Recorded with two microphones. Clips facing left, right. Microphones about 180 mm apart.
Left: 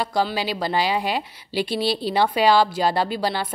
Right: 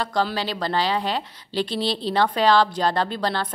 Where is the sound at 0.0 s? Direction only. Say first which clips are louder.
Left 1 dB; 10° left (ahead or behind).